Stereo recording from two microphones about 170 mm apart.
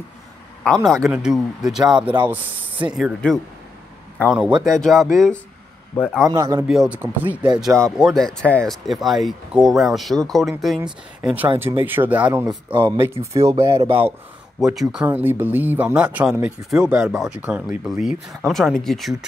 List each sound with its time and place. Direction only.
0.8 s speech: centre (ahead or behind)
4.5 s speech: 25° right (ahead or behind)
4.7 s speech: centre (ahead or behind)
6.3 s speech: 20° right (ahead or behind)
6.7 s speech: 5° right (ahead or behind)
12.7 s speech: 30° right (ahead or behind)
13.0 s speech: 15° right (ahead or behind)
14.6 s speech: 5° right (ahead or behind)